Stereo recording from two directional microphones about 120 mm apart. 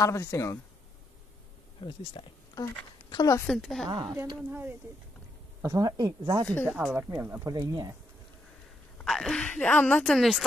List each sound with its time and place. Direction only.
0.0 s speech: 25° left (ahead or behind)
1.8 s speech: 45° left (ahead or behind)
3.1 s speech: 30° left (ahead or behind)
3.4 s a woman's voice: 5° left (ahead or behind)
4.5 s speech: 15° right (ahead or behind)
5.6 s speech: 30° right (ahead or behind)
6.7 s speech: 5° right (ahead or behind)
7.0 s speech: 20° right (ahead or behind)
8.9 s speech: 5° left (ahead or behind)